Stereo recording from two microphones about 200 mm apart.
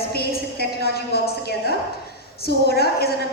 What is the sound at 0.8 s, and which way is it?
Speech, 50° left (ahead or behind).